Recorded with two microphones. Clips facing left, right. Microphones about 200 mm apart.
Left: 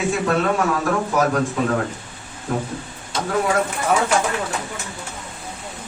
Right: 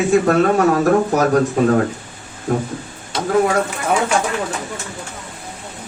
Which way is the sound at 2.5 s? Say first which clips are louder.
Right 5 dB; 55° right (ahead or behind).